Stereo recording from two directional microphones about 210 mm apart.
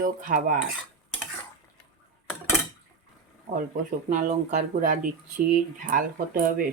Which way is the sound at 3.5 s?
40° right (ahead or behind).